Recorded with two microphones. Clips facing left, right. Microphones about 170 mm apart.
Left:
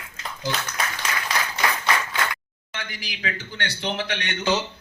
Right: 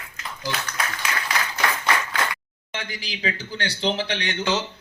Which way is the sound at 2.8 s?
30° right (ahead or behind).